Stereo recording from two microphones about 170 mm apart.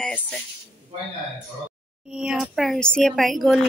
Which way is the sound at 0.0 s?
5° left (ahead or behind).